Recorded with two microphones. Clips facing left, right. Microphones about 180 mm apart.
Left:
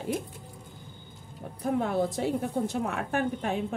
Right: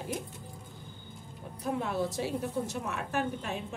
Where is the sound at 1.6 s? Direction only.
55° left (ahead or behind).